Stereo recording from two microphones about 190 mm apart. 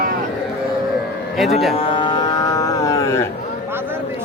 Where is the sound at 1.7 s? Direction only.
30° left (ahead or behind).